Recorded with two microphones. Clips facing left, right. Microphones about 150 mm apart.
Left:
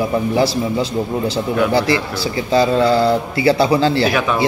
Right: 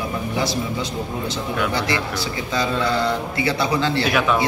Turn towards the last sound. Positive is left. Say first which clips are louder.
# left 6 dB
turn(degrees=30)  # may be behind; listen again after turning